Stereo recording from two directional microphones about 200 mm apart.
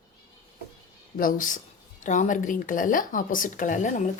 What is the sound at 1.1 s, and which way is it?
Speech, 45° left (ahead or behind).